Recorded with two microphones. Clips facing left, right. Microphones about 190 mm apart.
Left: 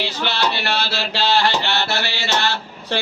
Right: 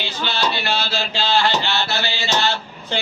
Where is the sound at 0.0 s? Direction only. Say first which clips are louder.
Left 1 dB; 65° left (ahead or behind).